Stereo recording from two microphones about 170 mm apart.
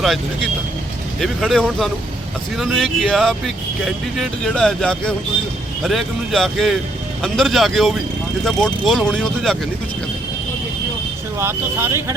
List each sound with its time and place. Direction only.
1.2 s speech: centre (ahead or behind)
11.3 s speech: 15° right (ahead or behind)